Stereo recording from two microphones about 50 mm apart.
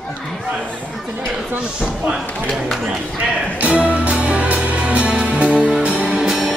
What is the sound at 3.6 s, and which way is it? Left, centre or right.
Music, right.